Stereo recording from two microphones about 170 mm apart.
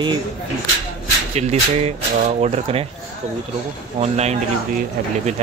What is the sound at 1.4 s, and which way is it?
Speech, 40° right (ahead or behind).